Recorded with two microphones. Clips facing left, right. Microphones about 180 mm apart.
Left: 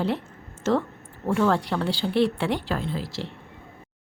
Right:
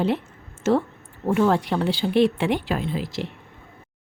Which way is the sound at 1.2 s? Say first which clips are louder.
Right 2 dB; 15° right (ahead or behind).